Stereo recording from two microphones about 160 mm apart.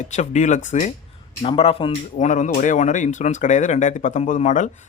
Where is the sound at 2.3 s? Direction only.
50° left (ahead or behind).